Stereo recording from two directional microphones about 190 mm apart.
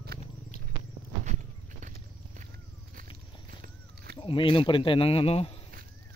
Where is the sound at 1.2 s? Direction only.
40° right (ahead or behind).